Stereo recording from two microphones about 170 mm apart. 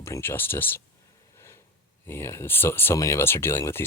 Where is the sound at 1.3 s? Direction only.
15° left (ahead or behind).